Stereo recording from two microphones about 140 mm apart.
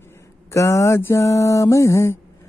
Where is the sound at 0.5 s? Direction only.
20° left (ahead or behind).